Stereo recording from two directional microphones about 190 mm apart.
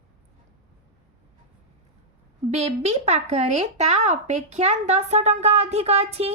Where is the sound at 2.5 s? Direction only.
35° right (ahead or behind).